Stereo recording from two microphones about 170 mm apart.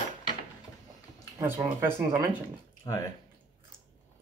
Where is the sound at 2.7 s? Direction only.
25° left (ahead or behind).